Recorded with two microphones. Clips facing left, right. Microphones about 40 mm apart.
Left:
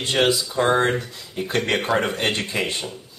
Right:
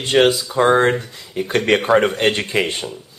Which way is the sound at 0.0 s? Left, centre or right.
Right.